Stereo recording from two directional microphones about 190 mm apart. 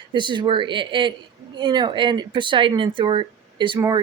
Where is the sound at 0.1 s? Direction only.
25° right (ahead or behind).